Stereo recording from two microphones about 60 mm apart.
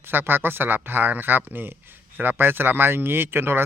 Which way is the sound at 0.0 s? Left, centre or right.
Right.